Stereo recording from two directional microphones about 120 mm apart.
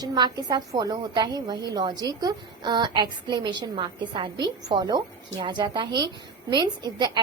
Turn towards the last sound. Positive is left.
turn(degrees=-35)  # may be behind; listen again after turning